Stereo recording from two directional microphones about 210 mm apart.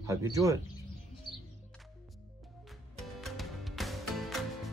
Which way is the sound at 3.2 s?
Centre (ahead or behind).